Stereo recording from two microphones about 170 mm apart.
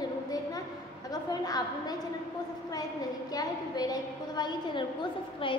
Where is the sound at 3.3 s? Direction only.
25° left (ahead or behind).